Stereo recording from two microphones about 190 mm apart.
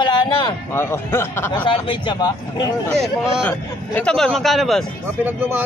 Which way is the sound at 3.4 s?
5° left (ahead or behind).